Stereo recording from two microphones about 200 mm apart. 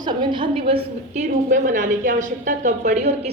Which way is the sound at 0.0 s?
25° right (ahead or behind).